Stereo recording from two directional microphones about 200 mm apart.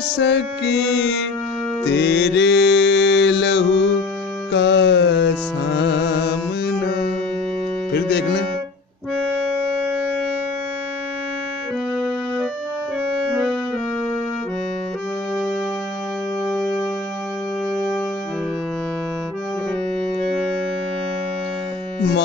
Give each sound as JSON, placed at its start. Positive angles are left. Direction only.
{"t": 0.1, "sound": "music", "side_deg": 60}
{"t": 4.5, "sound": "carnatic music", "side_deg": 60}
{"t": 7.9, "sound": "speech", "side_deg": 55}
{"t": 9.3, "sound": "civil defense siren", "side_deg": -5}
{"t": 13.3, "sound": "music", "side_deg": -5}
{"t": 16.4, "sound": "music", "side_deg": 0}